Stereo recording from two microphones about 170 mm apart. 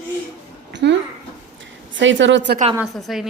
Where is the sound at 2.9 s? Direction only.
Centre (ahead or behind).